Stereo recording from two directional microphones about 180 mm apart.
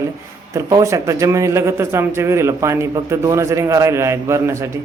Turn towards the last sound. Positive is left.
turn(degrees=-15)  # may be behind; listen again after turning